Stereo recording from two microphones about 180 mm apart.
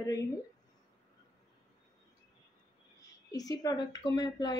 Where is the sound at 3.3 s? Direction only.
20° left (ahead or behind).